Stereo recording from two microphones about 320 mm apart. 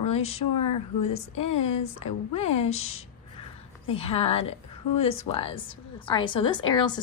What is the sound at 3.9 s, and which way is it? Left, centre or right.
A woman's voice, centre.